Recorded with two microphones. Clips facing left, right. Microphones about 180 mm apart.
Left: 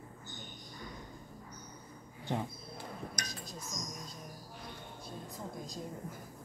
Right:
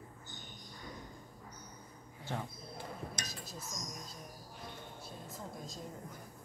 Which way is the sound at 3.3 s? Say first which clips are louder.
Left 1 dB; 5° right (ahead or behind).